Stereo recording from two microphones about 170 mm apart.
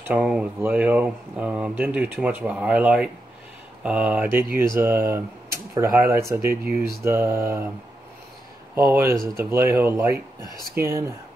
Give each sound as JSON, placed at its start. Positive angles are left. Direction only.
{"t": 0.1, "sound": "speech", "side_deg": -5}
{"t": 8.7, "sound": "speech", "side_deg": -15}